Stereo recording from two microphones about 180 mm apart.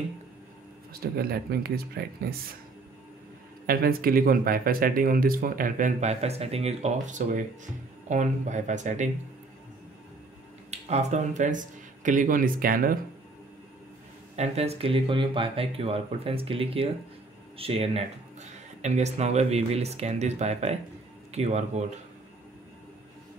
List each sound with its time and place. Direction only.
0.9 s speech: 60° right (ahead or behind)
3.6 s speech: 55° right (ahead or behind)
10.7 s speech: 40° right (ahead or behind)
14.3 s speech: 35° right (ahead or behind)